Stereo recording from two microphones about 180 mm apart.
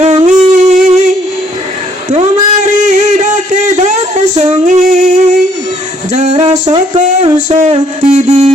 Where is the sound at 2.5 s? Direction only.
40° right (ahead or behind).